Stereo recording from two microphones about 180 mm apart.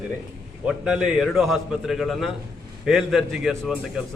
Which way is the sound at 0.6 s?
5° right (ahead or behind).